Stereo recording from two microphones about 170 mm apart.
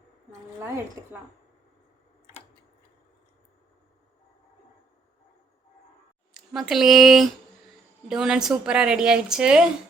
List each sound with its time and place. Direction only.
1.0 s a woman's voice: 15° right (ahead or behind)
6.3 s a woman's voice: centre (ahead or behind)